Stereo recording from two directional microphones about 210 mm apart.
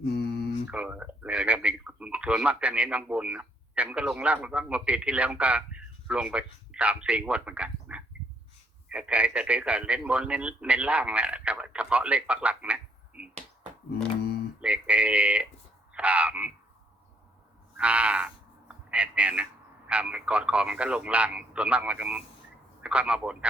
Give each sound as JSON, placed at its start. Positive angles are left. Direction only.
{"t": 0.0, "sound": "mantra", "side_deg": 50}
{"t": 0.7, "sound": "speech", "side_deg": -5}
{"t": 14.6, "sound": "speech", "side_deg": -5}
{"t": 17.7, "sound": "frog", "side_deg": -5}
{"t": 19.9, "sound": "speech", "side_deg": -5}